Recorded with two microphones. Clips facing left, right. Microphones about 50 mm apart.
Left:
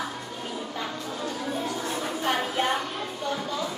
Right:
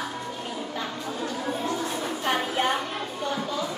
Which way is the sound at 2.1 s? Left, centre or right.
Right.